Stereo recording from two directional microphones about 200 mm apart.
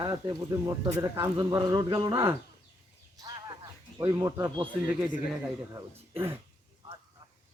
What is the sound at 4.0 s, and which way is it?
Speech, 10° right (ahead or behind).